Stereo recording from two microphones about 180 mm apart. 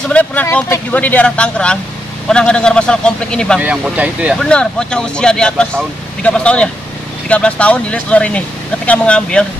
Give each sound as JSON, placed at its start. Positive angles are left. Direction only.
{"t": 0.1, "sound": "speech", "side_deg": 10}
{"t": 3.6, "sound": "speech", "side_deg": -5}
{"t": 4.4, "sound": "speech", "side_deg": 5}